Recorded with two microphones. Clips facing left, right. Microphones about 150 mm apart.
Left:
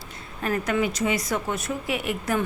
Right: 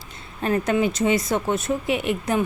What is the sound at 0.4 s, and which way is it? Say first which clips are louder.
A woman's voice: right 4 dB; 25° right (ahead or behind).